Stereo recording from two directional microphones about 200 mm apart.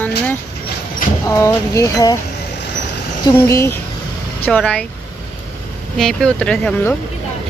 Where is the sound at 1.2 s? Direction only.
15° left (ahead or behind).